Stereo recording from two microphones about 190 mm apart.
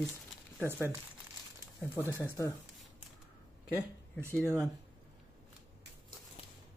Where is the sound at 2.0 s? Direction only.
15° left (ahead or behind).